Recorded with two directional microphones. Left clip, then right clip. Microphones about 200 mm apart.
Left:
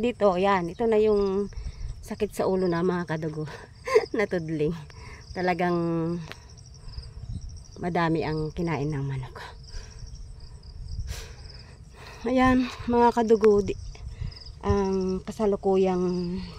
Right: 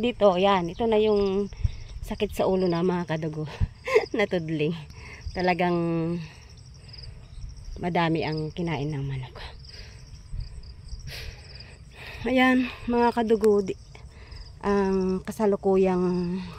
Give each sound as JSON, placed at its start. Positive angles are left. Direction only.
{"t": 0.0, "sound": "speech", "side_deg": -10}
{"t": 7.7, "sound": "speech", "side_deg": 0}
{"t": 11.1, "sound": "cricket", "side_deg": 0}
{"t": 12.0, "sound": "speech", "side_deg": 0}